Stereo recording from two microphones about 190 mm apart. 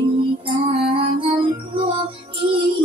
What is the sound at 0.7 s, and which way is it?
Music, 30° right (ahead or behind).